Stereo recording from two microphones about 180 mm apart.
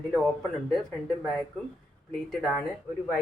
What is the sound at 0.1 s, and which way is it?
Speech, centre (ahead or behind).